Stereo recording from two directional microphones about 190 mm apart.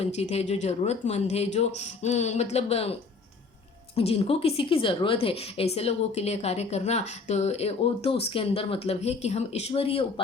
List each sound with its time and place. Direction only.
0.0 s a woman's voice: 35° left (ahead or behind)
3.9 s a woman's voice: 30° left (ahead or behind)